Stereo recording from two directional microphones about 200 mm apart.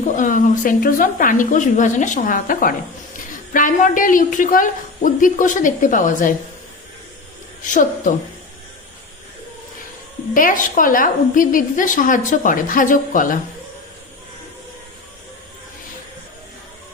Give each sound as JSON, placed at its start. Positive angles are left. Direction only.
{"t": 0.2, "sound": "a woman's voice", "side_deg": 40}
{"t": 7.7, "sound": "a woman's voice", "side_deg": 40}
{"t": 10.3, "sound": "a woman's voice", "side_deg": 40}